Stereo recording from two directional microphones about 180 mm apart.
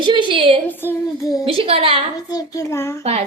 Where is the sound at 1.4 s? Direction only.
30° right (ahead or behind).